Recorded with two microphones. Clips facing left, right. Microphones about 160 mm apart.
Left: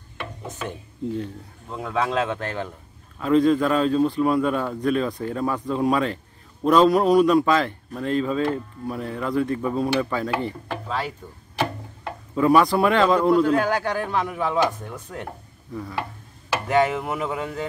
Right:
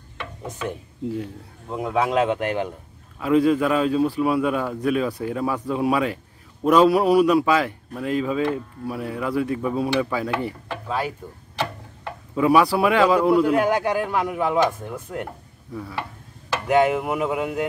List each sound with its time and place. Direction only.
0.7 s a man's voice: 10° right (ahead or behind)
12.4 s a man's voice: 5° right (ahead or behind)
16.6 s a man's voice: 15° right (ahead or behind)